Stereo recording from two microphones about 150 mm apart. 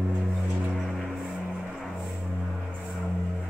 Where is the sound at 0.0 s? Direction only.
5° right (ahead or behind).